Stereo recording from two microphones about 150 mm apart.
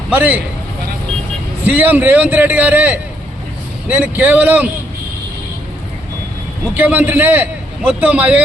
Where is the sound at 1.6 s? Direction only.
10° right (ahead or behind).